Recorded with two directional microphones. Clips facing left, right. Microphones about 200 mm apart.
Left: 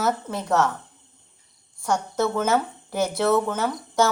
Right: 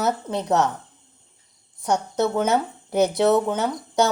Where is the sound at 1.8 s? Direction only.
20° right (ahead or behind).